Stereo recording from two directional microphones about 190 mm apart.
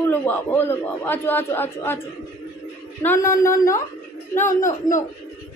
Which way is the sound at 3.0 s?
15° left (ahead or behind).